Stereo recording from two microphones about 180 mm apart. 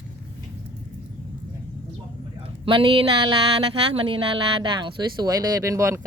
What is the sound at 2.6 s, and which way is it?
Speech, 30° right (ahead or behind).